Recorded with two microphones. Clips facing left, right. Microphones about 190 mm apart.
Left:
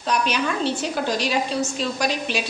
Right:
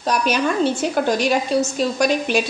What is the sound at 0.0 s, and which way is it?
A woman's voice, 45° right (ahead or behind).